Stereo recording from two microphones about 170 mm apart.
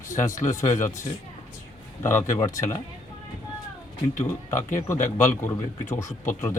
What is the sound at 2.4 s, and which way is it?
Speech, 20° left (ahead or behind).